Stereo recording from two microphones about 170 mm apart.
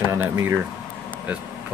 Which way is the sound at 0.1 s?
15° right (ahead or behind).